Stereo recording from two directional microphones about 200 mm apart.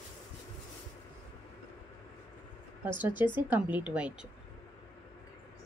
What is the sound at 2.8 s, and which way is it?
Speech, 10° right (ahead or behind).